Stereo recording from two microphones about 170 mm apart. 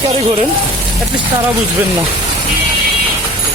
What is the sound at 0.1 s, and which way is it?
Speech, 40° right (ahead or behind).